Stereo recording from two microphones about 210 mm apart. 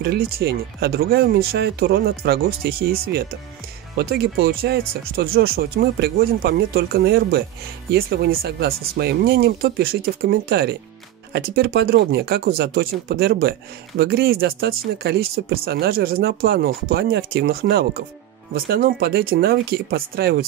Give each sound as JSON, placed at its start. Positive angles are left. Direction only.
{"t": 0.0, "sound": "speech", "side_deg": -50}